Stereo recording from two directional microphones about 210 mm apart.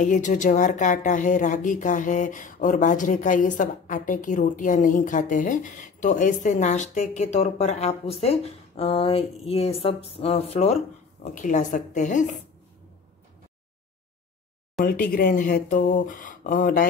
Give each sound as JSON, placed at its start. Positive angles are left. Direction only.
{"t": 0.0, "sound": "speech", "side_deg": 35}
{"t": 14.8, "sound": "speech", "side_deg": 45}